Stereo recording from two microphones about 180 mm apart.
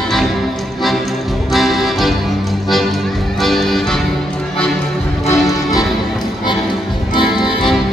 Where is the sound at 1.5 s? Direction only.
Centre (ahead or behind).